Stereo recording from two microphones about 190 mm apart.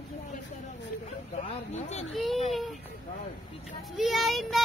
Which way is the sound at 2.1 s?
Centre (ahead or behind).